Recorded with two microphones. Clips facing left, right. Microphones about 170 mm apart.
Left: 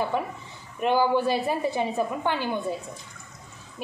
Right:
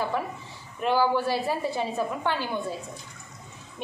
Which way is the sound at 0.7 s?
20° left (ahead or behind).